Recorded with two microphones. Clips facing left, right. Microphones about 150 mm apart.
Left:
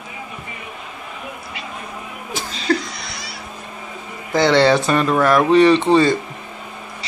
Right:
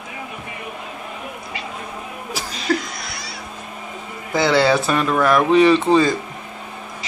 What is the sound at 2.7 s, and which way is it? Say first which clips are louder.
Laughter: left 2 dB; centre (ahead or behind).